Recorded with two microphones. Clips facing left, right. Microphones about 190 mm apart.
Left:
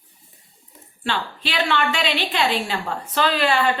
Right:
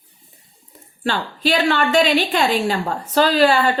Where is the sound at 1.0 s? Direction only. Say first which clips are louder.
Right 6 dB; 40° right (ahead or behind).